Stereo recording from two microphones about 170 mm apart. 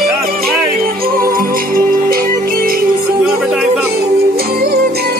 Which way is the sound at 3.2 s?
Centre (ahead or behind).